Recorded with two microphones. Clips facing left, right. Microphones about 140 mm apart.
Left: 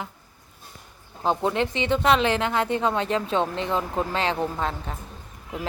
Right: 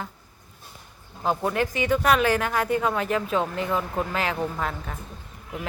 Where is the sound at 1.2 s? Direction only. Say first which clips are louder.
Left 1 dB; 25° left (ahead or behind).